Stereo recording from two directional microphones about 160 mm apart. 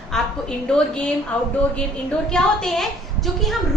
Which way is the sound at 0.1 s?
5° left (ahead or behind).